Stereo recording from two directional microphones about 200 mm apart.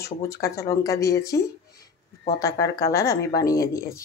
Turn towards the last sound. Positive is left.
turn(degrees=15)  # may be behind; listen again after turning